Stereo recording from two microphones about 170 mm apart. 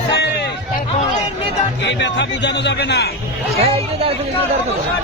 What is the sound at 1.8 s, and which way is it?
A man's voice, 90° left.